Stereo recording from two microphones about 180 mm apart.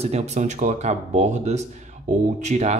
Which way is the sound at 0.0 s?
35° right (ahead or behind).